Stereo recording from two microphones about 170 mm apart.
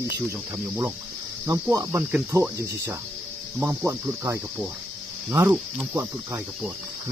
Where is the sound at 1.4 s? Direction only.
20° right (ahead or behind).